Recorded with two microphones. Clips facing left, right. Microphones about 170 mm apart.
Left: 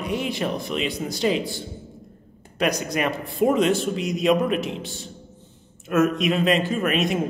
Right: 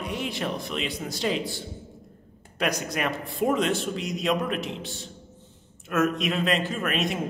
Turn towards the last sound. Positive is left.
turn(degrees=0)  # may be behind; listen again after turning